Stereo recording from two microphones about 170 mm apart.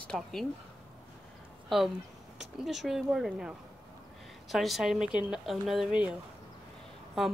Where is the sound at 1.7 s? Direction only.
Centre (ahead or behind).